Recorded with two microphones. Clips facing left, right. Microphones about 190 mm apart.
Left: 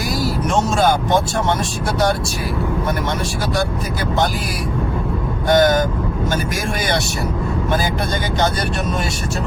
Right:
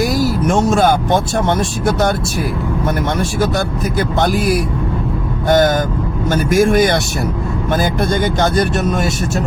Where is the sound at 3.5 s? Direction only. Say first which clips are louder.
Right 3 dB; 55° right (ahead or behind).